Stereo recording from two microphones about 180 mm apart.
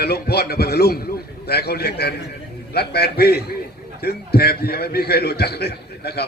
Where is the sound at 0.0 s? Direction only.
60° left (ahead or behind).